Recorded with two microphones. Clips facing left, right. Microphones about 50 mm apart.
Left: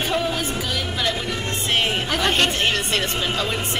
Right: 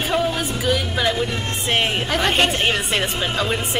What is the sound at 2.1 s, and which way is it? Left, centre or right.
Speech, centre.